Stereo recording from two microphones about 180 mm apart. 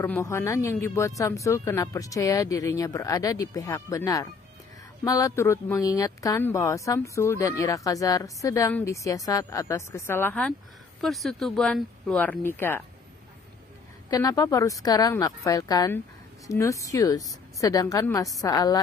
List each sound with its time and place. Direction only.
0.0 s speech: 15° left (ahead or behind)
14.1 s a woman's voice: 20° left (ahead or behind)